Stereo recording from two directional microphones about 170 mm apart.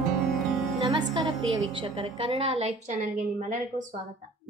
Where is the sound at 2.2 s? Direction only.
35° right (ahead or behind).